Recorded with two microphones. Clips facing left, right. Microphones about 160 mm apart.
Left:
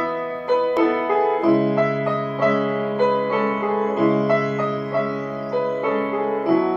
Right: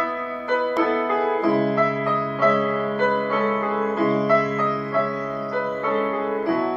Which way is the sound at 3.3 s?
15° left (ahead or behind).